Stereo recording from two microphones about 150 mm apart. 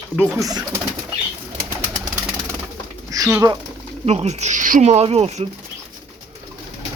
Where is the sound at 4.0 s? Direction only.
45° right (ahead or behind).